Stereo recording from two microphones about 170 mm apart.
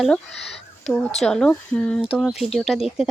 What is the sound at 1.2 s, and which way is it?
Speech, 5° left (ahead or behind).